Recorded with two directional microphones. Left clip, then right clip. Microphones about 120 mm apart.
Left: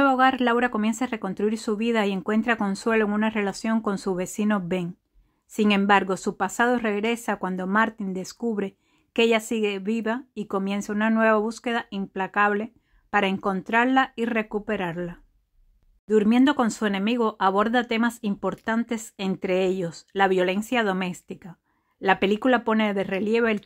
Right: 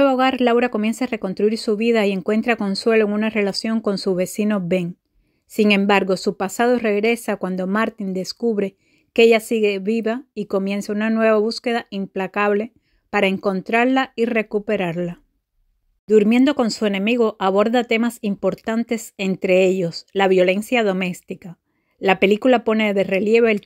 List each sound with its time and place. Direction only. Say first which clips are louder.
0.0 s a woman's voice: right 3 dB; 30° right (ahead or behind)